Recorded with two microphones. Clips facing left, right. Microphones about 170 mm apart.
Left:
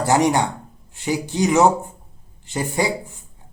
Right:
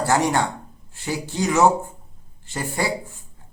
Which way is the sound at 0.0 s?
20° left (ahead or behind).